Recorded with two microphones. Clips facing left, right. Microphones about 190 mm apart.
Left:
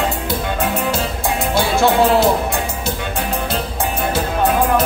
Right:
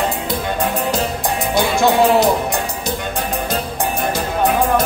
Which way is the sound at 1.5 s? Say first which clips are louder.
Even; 15° right (ahead or behind).